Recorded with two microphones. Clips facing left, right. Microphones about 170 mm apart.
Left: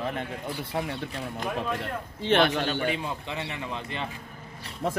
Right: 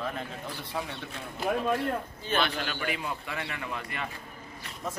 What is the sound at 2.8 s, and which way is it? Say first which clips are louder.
A man's voice: left 4 dB; 25° left (ahead or behind).